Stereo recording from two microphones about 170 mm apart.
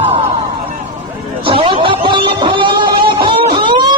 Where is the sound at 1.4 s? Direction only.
30° right (ahead or behind).